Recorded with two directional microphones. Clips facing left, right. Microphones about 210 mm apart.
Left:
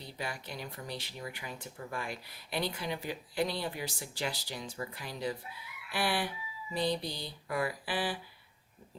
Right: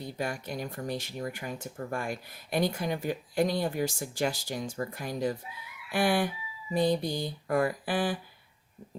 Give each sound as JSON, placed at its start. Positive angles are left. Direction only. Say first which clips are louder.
{"t": 0.0, "sound": "speech", "louder": "right 7 dB", "side_deg": -45}